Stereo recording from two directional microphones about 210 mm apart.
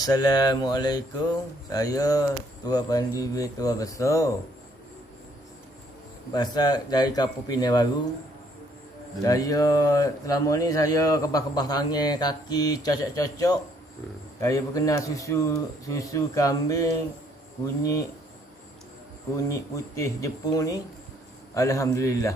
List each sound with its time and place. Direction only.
0.0 s speech: 20° left (ahead or behind)
6.3 s speech: 20° left (ahead or behind)
9.2 s speech: 15° left (ahead or behind)
19.5 s speech: 15° left (ahead or behind)